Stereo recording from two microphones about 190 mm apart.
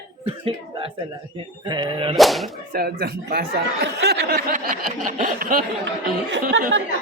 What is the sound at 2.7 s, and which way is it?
Speech, 55° right (ahead or behind).